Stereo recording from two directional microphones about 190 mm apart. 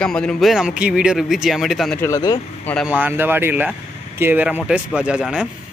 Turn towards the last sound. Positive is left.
turn(degrees=-5)  # may be behind; listen again after turning